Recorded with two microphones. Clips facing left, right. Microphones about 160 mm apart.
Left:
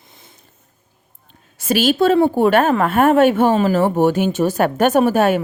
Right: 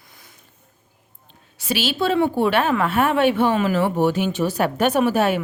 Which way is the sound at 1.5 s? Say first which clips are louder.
Left 7 dB; 45° left (ahead or behind).